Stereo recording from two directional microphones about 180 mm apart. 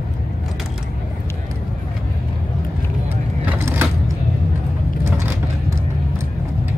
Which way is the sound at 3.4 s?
10° right (ahead or behind).